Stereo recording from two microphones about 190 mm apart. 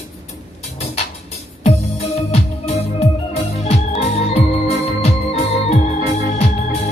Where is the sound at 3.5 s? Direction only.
35° left (ahead or behind).